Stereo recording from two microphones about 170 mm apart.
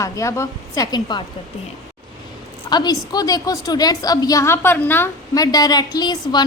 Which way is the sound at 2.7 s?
25° left (ahead or behind).